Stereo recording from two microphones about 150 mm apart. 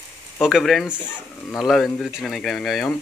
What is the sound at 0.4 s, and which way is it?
Speech, centre (ahead or behind).